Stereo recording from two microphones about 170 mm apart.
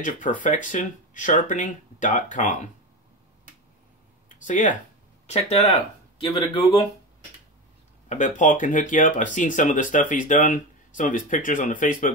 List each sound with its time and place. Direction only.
0.0 s speech: 50° left (ahead or behind)
4.5 s speech: 50° left (ahead or behind)
8.1 s speech: 45° left (ahead or behind)